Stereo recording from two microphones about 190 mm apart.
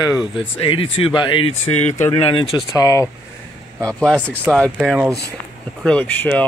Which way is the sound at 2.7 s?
15° left (ahead or behind).